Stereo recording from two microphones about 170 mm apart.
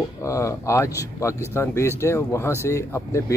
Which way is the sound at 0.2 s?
15° left (ahead or behind).